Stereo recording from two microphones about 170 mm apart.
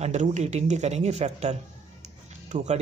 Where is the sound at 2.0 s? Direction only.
45° right (ahead or behind).